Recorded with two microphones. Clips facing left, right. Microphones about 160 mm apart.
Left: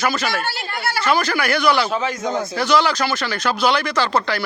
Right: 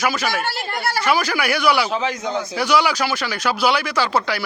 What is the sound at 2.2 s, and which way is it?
Speech, 45° left (ahead or behind).